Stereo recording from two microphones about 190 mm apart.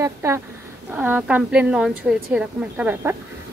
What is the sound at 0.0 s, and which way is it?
Speech, 15° right (ahead or behind).